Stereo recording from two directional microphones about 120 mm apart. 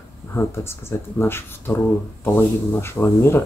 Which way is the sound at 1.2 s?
20° left (ahead or behind).